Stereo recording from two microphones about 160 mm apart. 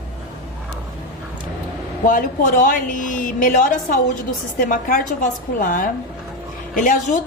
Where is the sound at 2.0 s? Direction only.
55° left (ahead or behind).